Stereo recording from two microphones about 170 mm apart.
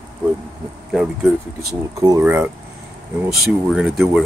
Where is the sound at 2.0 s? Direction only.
20° right (ahead or behind).